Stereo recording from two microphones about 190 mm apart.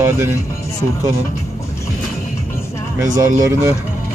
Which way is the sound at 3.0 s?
15° right (ahead or behind).